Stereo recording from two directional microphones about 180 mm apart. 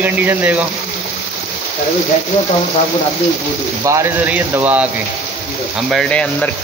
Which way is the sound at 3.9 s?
15° right (ahead or behind).